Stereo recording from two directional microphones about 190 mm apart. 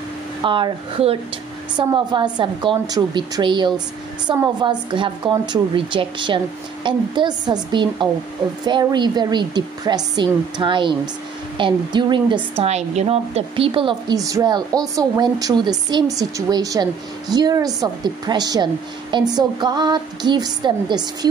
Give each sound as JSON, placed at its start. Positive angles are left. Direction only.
{"t": 0.4, "sound": "a woman's voice", "side_deg": -25}